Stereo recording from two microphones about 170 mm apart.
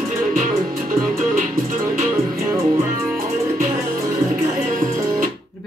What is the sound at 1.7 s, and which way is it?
Music, 50° right (ahead or behind).